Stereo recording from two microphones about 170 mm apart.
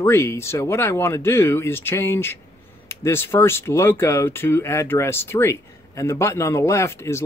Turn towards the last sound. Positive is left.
turn(degrees=15)  # may be behind; listen again after turning